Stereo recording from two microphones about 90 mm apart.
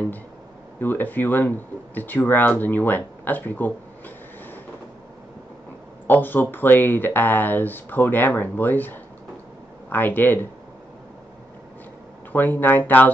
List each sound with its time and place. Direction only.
0.7 s speech: 20° left (ahead or behind)
6.0 s speech: 20° left (ahead or behind)
12.3 s speech: 20° left (ahead or behind)